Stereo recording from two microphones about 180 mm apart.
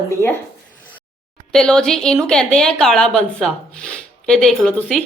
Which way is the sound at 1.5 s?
5° left (ahead or behind).